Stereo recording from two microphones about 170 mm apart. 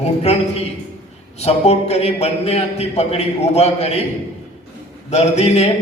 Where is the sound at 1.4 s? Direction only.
40° left (ahead or behind).